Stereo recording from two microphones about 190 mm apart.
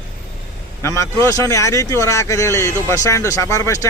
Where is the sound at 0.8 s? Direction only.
15° left (ahead or behind).